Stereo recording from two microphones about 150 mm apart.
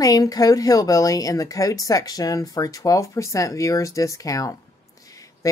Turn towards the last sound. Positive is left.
turn(degrees=20)  # may be behind; listen again after turning